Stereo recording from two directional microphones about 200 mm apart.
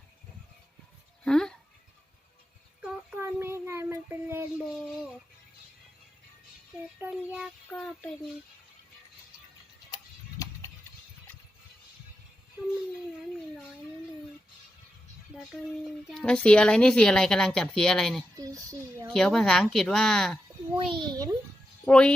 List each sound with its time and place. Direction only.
1.2 s a sound: 5° left (ahead or behind)
2.8 s child singing: 10° right (ahead or behind)
7.0 s child singing: 5° right (ahead or behind)
7.7 s music: centre (ahead or behind)
9.9 s tick-tock: 15° left (ahead or behind)
16.0 s speech: 5° left (ahead or behind)
18.3 s a sound: 15° right (ahead or behind)
19.1 s speech: centre (ahead or behind)
20.7 s a child's voice: 25° right (ahead or behind)
21.8 s speech: 5° left (ahead or behind)